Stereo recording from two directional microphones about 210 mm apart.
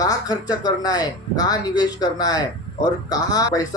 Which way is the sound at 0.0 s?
15° left (ahead or behind).